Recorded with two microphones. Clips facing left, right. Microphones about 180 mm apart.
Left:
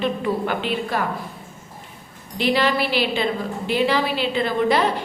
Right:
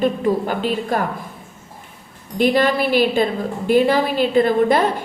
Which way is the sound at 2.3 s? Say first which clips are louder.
Right 4 dB; 45° right (ahead or behind).